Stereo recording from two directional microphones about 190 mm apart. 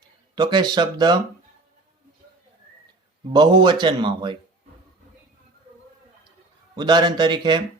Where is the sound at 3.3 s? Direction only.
25° right (ahead or behind).